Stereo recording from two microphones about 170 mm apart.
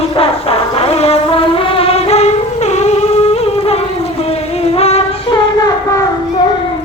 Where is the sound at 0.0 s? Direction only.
35° left (ahead or behind).